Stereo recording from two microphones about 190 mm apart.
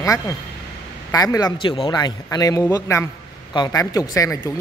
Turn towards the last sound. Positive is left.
turn(degrees=15)  # may be behind; listen again after turning